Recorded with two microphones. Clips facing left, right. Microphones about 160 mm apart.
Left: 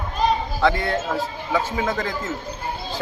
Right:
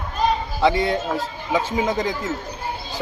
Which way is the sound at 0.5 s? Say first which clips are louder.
Right 2 dB; 15° right (ahead or behind).